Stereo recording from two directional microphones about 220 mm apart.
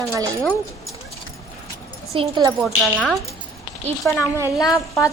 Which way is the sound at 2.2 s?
15° right (ahead or behind).